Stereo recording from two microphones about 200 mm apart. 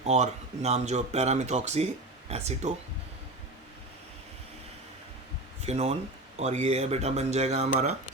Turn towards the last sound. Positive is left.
turn(degrees=-35)  # may be behind; listen again after turning